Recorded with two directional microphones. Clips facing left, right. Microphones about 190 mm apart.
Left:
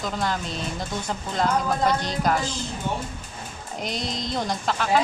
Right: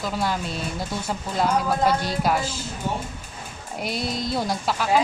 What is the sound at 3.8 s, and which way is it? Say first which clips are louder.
A woman's voice: right 3 dB; 5° right (ahead or behind).